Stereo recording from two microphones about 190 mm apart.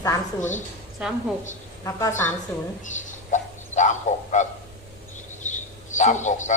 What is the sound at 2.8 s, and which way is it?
Speech, 40° left (ahead or behind).